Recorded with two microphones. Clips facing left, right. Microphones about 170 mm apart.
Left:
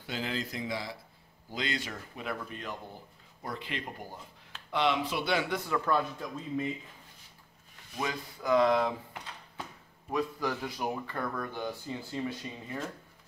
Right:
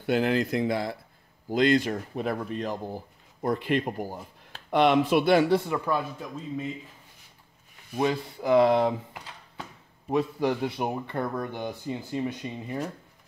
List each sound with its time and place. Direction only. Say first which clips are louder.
0.0 s speech: right 11 dB; 60° right (ahead or behind); by 3.0 s 40° right (ahead or behind)
3.4 s speech: right 12 dB; 50° right (ahead or behind)
5.9 s speech: right 1 dB; 5° right (ahead or behind)
8.0 s speech: right 9 dB; 30° right (ahead or behind)
10.0 s speech: right 6 dB; 30° right (ahead or behind)